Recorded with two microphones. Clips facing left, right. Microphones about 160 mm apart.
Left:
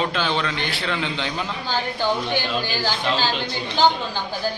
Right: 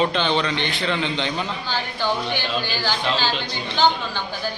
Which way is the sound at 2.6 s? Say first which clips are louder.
Left 1 dB; 45° left (ahead or behind).